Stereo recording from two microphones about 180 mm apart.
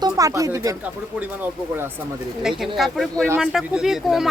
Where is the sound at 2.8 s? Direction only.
Centre (ahead or behind).